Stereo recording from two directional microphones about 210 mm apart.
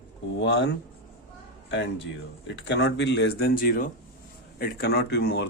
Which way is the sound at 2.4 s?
55° left (ahead or behind).